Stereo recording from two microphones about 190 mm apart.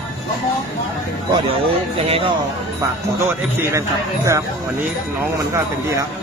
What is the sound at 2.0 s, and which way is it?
Speech, 30° right (ahead or behind).